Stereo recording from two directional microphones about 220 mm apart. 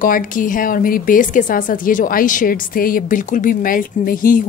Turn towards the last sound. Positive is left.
turn(degrees=40)  # may be behind; listen again after turning